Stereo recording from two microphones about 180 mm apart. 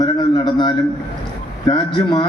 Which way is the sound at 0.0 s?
25° left (ahead or behind).